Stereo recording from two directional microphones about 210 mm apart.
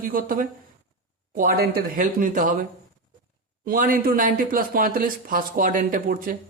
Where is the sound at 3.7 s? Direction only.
45° right (ahead or behind).